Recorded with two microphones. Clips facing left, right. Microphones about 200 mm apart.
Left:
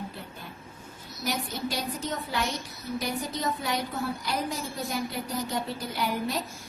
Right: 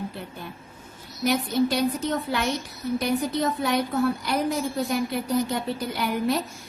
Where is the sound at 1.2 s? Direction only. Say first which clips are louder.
Right 9 dB; 65° right (ahead or behind).